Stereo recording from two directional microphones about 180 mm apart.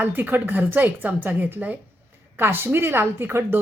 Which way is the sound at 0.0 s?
10° right (ahead or behind).